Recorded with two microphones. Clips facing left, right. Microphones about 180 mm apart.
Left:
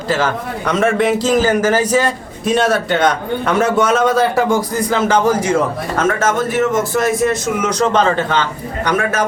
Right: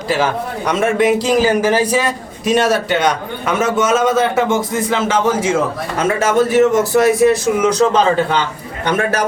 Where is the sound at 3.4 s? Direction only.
5° right (ahead or behind).